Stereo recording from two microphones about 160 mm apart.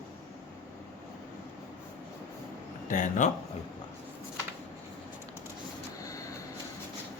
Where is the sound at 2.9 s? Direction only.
55° left (ahead or behind).